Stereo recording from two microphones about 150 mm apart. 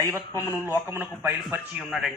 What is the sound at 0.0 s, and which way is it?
A man's voice, 20° right (ahead or behind).